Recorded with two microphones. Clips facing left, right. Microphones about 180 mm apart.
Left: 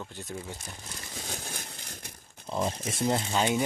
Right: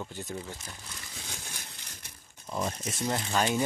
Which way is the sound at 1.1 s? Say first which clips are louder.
Left 7 dB; 45° left (ahead or behind).